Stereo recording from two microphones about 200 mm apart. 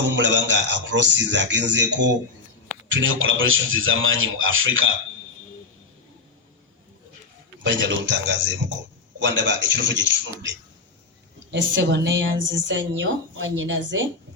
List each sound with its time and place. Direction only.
0.2 s a man's voice: 65° right (ahead or behind)
2.9 s a man's voice: 80° right
7.6 s a man's voice: 65° right (ahead or behind)
11.5 s a woman's voice: 60° right (ahead or behind)